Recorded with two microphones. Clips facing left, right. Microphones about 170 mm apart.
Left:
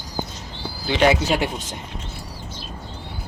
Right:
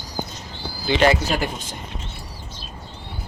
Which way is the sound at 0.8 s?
5° left (ahead or behind).